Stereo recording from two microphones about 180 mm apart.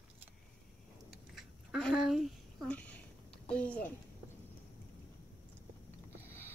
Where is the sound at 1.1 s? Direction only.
Centre (ahead or behind).